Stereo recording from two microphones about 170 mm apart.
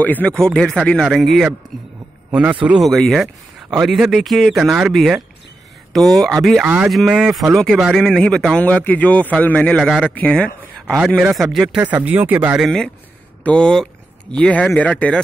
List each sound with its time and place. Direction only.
0.0 s speech: 10° left (ahead or behind)
2.6 s speech: 5° right (ahead or behind)
12.6 s speech: 5° left (ahead or behind)